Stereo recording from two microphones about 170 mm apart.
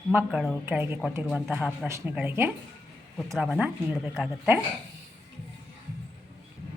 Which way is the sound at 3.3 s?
Centre (ahead or behind).